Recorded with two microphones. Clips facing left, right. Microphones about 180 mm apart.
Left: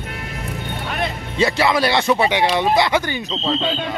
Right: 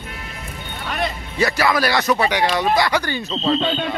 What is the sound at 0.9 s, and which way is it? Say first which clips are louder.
Speech: right 2 dB; 25° left (ahead or behind).